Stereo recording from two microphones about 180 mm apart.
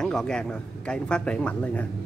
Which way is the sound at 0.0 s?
5° left (ahead or behind).